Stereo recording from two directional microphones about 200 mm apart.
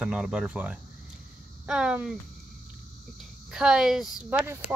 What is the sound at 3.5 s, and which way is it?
Speech, 5° right (ahead or behind).